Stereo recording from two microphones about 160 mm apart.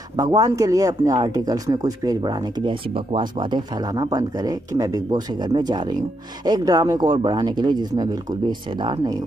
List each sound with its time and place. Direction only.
0.1 s speech: 25° right (ahead or behind)